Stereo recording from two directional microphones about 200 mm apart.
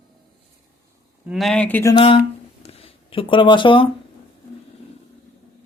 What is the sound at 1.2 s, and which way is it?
Speech, centre (ahead or behind).